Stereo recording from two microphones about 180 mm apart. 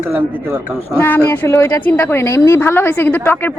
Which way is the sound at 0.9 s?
10° left (ahead or behind).